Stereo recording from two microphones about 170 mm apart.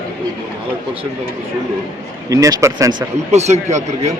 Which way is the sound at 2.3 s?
20° right (ahead or behind).